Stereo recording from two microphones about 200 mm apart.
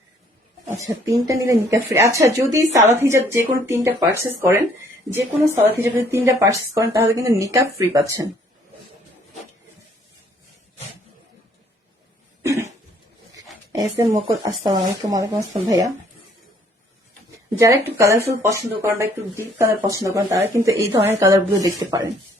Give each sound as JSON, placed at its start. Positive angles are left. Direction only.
{"t": 0.9, "sound": "a woman's voice", "side_deg": -20}
{"t": 12.4, "sound": "cough", "side_deg": -15}
{"t": 14.0, "sound": "a woman's voice", "side_deg": -25}
{"t": 17.6, "sound": "a woman's voice", "side_deg": -15}